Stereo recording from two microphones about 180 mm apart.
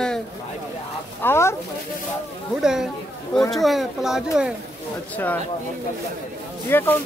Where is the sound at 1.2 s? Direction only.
15° left (ahead or behind).